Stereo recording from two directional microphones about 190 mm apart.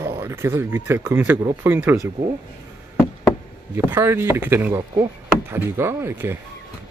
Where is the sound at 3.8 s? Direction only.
10° right (ahead or behind).